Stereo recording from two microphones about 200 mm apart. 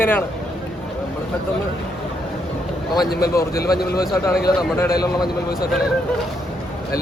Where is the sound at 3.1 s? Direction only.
50° left (ahead or behind).